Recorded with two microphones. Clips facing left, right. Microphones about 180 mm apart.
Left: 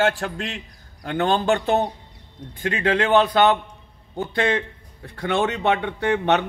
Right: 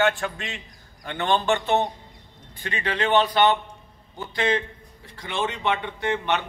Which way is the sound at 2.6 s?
55° left (ahead or behind).